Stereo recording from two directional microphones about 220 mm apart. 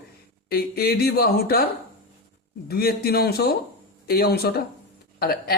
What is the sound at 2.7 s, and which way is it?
Speech, 45° left (ahead or behind).